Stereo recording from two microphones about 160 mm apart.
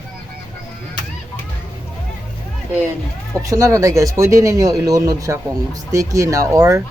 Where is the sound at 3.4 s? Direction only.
20° right (ahead or behind).